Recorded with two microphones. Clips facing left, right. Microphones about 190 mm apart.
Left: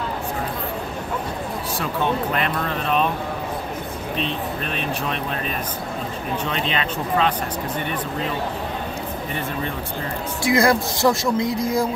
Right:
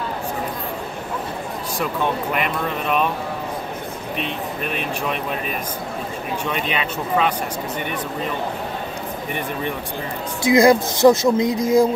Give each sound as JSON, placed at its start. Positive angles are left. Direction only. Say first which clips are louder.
{"t": 6.5, "sound": "speech", "louder": "even", "side_deg": -10}
{"t": 10.4, "sound": "speech", "louder": "right 4 dB", "side_deg": -20}